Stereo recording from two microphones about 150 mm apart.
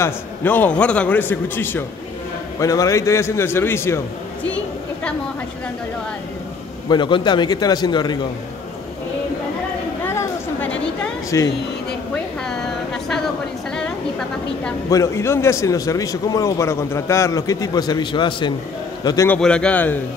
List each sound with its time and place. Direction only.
0.0 s a man's voice: 15° left (ahead or behind)
6.9 s a man's voice: 30° left (ahead or behind)
10.0 s a sound: 15° left (ahead or behind)
11.2 s a man's voice: 20° left (ahead or behind)
12.4 s a sound: 5° left (ahead or behind)
14.9 s a man's voice: 20° left (ahead or behind)
19.2 s a man's voice: 10° left (ahead or behind)